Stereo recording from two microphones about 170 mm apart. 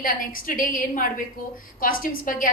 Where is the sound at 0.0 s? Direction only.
55° left (ahead or behind).